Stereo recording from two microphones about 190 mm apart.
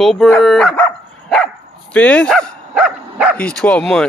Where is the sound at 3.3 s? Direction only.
5° left (ahead or behind).